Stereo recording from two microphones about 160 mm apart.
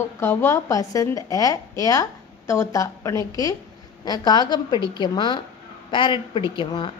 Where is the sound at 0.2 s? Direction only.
15° left (ahead or behind).